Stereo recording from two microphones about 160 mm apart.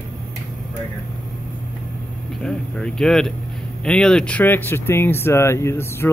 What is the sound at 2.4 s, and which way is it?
Speech, 5° left (ahead or behind).